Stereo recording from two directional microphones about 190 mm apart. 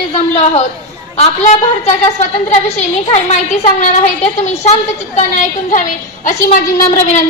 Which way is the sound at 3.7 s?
35° left (ahead or behind).